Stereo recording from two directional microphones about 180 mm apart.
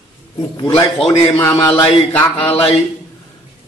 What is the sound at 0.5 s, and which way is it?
A man's voice, 30° left (ahead or behind).